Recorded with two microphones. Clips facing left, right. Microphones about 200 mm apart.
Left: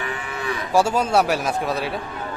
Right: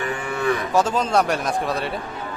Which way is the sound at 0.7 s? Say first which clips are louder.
Left 5 dB; 10° left (ahead or behind).